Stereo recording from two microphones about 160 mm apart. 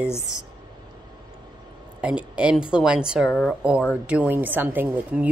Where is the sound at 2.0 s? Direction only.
5° right (ahead or behind).